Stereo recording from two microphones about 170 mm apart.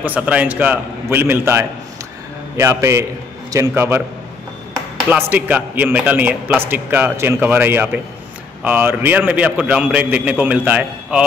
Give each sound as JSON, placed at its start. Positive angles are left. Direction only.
{"t": 0.0, "sound": "a man's voice", "side_deg": -10}
{"t": 5.1, "sound": "a man's voice", "side_deg": -10}